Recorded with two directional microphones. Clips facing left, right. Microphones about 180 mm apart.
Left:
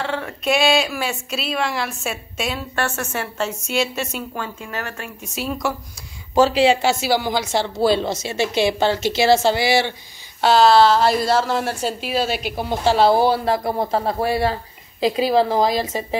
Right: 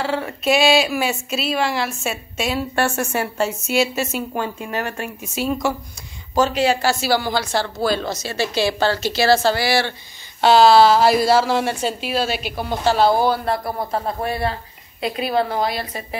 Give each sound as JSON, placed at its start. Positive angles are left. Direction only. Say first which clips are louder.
{"t": 0.0, "sound": "speech", "louder": "right 2 dB", "side_deg": -5}
{"t": 2.7, "sound": "a woman's voice", "louder": "right 4 dB", "side_deg": -10}
{"t": 4.3, "sound": "a woman's voice", "louder": "right 4 dB", "side_deg": -20}
{"t": 5.2, "sound": "speech", "louder": "right 3 dB", "side_deg": 0}
{"t": 6.3, "sound": "speech", "louder": "left 3 dB", "side_deg": 30}
{"t": 10.4, "sound": "speech", "louder": "right 2 dB", "side_deg": 0}
{"t": 12.5, "sound": "a woman's voice", "louder": "left 1 dB", "side_deg": 25}